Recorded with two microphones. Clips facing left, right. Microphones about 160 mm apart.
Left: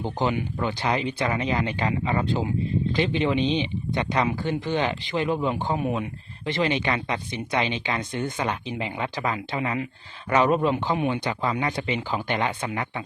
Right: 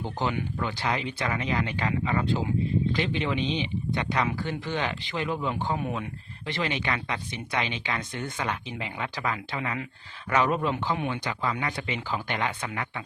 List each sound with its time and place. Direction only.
0.0 s speech: 20° left (ahead or behind)